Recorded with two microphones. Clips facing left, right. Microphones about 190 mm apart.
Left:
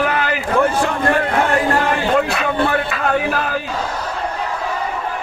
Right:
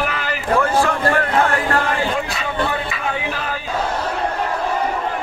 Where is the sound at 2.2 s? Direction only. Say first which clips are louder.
Left 5 dB; 60° left (ahead or behind).